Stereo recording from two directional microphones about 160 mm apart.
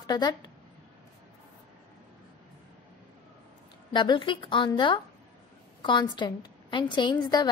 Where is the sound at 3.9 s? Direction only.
30° left (ahead or behind).